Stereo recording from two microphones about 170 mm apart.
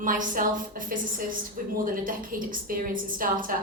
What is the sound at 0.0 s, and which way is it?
A woman's voice, 50° right (ahead or behind).